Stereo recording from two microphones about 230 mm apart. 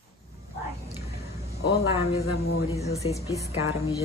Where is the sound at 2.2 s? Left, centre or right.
Left.